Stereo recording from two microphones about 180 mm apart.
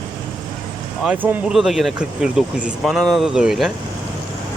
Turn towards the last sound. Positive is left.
turn(degrees=-5)  # may be behind; listen again after turning